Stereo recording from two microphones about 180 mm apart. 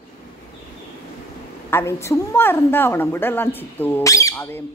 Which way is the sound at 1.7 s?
15° left (ahead or behind).